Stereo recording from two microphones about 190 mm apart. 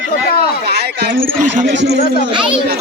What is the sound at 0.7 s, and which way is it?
Speech, 60° right (ahead or behind).